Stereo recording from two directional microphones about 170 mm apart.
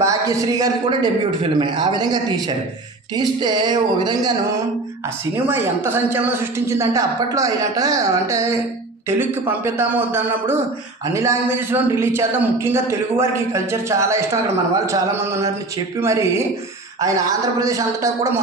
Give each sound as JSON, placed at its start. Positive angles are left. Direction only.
{"t": 0.0, "sound": "a man's voice", "side_deg": -20}
{"t": 5.5, "sound": "a man's voice", "side_deg": -15}